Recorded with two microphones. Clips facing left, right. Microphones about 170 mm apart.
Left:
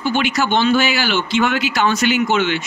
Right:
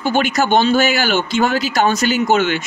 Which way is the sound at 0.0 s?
45° right (ahead or behind).